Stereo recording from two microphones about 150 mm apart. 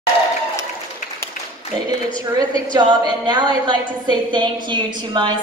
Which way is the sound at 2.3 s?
25° right (ahead or behind).